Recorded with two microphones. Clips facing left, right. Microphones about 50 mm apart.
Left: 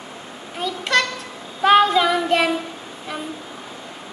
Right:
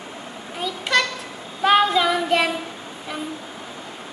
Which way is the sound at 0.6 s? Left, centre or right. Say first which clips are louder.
Left 1 dB; centre.